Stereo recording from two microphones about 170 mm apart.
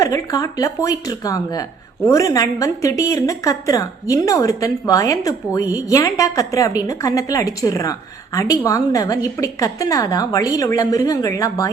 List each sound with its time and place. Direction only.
0.0 s a woman's voice: 20° left (ahead or behind)